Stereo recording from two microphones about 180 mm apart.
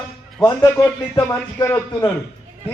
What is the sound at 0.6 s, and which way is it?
A man's voice, 20° left (ahead or behind).